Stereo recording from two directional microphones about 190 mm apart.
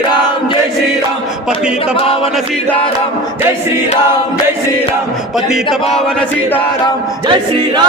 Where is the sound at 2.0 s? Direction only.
30° left (ahead or behind).